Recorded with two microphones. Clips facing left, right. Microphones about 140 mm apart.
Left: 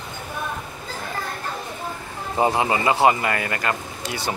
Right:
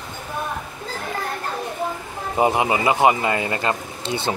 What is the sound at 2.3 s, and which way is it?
Speech, 15° right (ahead or behind).